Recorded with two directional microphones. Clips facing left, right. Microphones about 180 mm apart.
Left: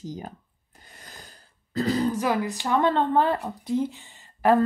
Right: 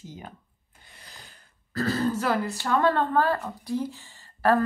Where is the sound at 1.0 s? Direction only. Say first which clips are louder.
Left 4 dB; 45° left (ahead or behind).